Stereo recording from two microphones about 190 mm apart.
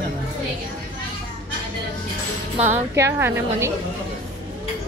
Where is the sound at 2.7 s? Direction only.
15° right (ahead or behind).